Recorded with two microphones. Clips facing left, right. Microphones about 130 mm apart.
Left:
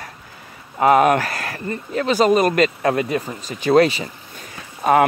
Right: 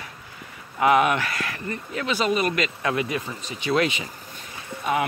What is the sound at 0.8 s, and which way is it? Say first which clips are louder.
Speech: left 5 dB; 40° left (ahead or behind).